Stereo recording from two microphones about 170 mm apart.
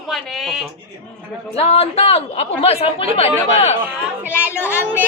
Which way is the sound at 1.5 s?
35° left (ahead or behind).